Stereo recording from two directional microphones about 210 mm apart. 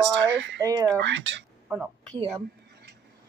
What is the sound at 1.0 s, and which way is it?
Speech, 60° right (ahead or behind).